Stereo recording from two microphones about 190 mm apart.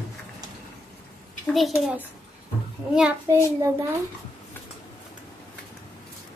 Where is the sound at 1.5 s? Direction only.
Centre (ahead or behind).